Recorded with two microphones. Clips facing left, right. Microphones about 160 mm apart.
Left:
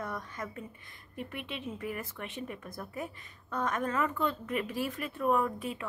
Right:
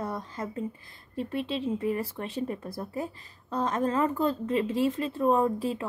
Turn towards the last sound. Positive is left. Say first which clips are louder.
# right 5 dB
turn(degrees=-30)  # may be behind; listen again after turning